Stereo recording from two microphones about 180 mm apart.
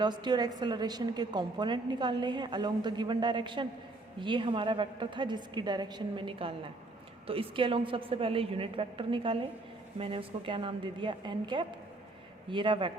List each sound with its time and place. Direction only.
0.0 s a woman's voice: 25° right (ahead or behind)